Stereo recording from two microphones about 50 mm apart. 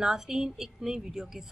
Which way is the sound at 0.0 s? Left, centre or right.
Centre.